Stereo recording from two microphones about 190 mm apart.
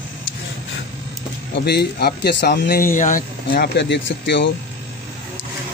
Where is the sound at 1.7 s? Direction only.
60° left (ahead or behind).